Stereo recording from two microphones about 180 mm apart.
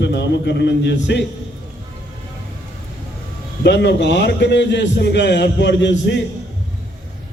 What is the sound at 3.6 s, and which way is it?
A man's voice, 75° left (ahead or behind).